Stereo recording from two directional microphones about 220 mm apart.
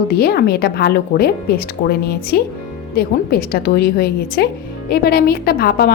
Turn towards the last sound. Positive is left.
turn(degrees=45)  # may be behind; listen again after turning